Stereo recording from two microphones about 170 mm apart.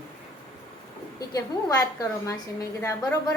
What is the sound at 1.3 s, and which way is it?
A woman's voice, 20° left (ahead or behind).